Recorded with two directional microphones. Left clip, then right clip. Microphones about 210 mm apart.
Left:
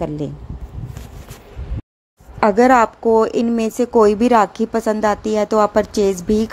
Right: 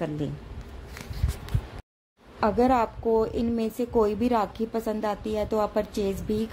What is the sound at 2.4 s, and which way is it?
A woman's voice, 20° left (ahead or behind).